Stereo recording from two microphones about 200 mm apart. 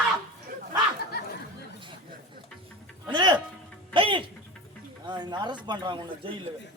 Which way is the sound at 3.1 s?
20° right (ahead or behind).